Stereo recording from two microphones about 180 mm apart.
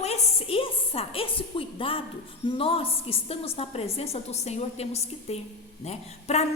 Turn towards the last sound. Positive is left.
turn(degrees=35)  # may be behind; listen again after turning